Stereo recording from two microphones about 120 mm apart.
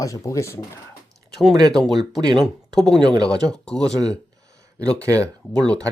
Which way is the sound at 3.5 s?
5° left (ahead or behind).